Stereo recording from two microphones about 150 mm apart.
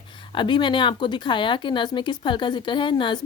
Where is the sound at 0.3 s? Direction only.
30° left (ahead or behind).